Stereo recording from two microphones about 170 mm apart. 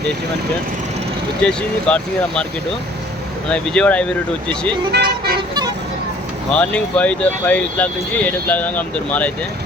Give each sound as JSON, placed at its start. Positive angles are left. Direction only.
{"t": 1.5, "sound": "speech", "side_deg": 5}
{"t": 3.5, "sound": "speech", "side_deg": 5}
{"t": 4.9, "sound": "vehicle", "side_deg": -70}
{"t": 6.5, "sound": "speech", "side_deg": 5}